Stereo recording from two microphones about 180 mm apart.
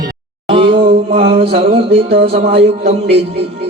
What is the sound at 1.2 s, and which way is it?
Music, 30° right (ahead or behind).